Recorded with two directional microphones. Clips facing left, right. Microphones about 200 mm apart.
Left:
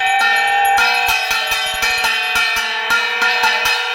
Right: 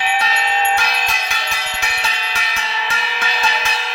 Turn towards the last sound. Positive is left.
turn(degrees=70)  # may be behind; listen again after turning